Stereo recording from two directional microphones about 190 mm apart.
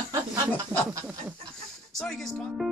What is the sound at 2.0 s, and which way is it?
Speech, centre (ahead or behind).